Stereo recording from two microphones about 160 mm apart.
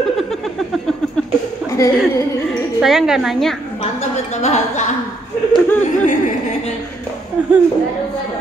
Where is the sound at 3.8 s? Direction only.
40° left (ahead or behind).